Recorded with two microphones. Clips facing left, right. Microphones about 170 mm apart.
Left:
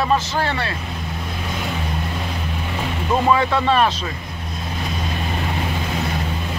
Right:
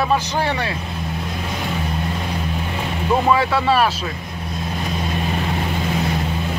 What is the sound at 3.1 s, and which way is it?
Speech, 5° right (ahead or behind).